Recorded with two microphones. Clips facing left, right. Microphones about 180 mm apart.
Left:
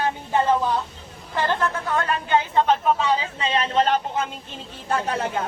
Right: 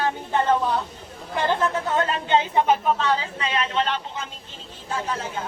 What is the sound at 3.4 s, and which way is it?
Speech, 30° left (ahead or behind).